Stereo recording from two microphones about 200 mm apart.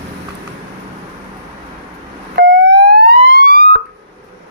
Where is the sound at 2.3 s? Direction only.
50° right (ahead or behind).